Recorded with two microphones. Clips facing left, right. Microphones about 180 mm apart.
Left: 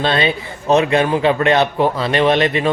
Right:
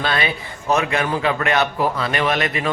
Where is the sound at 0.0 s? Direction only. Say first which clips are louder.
Left 5 dB; 25° left (ahead or behind).